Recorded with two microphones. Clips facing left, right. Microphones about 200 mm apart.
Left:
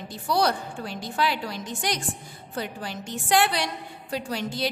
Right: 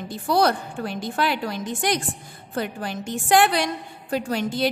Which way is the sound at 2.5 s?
55° right (ahead or behind).